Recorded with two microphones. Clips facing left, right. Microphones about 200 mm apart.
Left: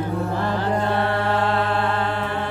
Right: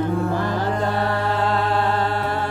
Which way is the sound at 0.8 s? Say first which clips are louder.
Even; 40° right (ahead or behind).